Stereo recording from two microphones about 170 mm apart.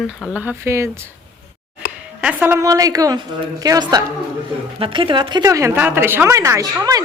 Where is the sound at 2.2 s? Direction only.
10° right (ahead or behind).